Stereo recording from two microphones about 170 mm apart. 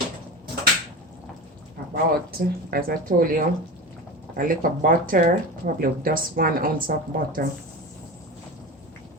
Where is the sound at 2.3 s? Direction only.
60° right (ahead or behind).